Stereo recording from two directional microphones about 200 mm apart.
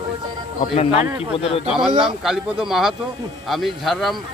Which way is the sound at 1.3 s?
30° left (ahead or behind).